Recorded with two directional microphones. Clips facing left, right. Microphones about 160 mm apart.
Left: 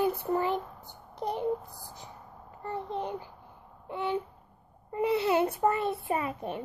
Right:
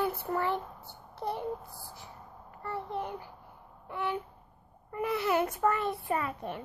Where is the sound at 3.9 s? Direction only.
20° left (ahead or behind).